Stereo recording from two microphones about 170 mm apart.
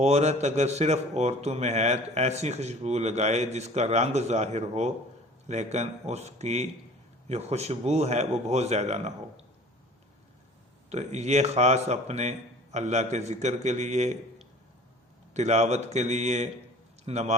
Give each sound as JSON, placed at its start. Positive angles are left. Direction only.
{"t": 0.0, "sound": "speech", "side_deg": -40}
{"t": 10.8, "sound": "a man's voice", "side_deg": -40}
{"t": 15.3, "sound": "speech", "side_deg": -40}